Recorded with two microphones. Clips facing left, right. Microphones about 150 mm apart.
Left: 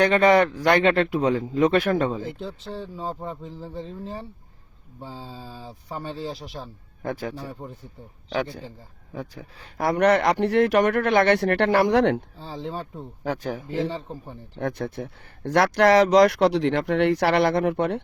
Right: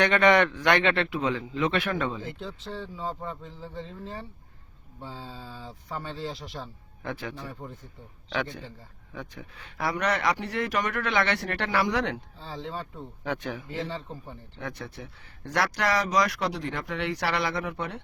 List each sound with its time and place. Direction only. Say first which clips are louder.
0.0 s a man's voice: left 4 dB; 35° left (ahead or behind)
3.0 s speech: left 2 dB; 10° left (ahead or behind)
7.0 s a man's voice: left 5 dB; 40° left (ahead or behind)
9.1 s speech: left 5 dB; 35° left (ahead or behind); by 12.2 s 55° left (ahead or behind)
12.4 s speech: left 4 dB; 10° left (ahead or behind)
13.2 s a man's voice: left 4 dB; 35° left (ahead or behind); by 18.0 s 60° left (ahead or behind)